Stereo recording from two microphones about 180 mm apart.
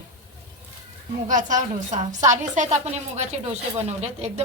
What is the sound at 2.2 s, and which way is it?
A woman's voice, 40° right (ahead or behind).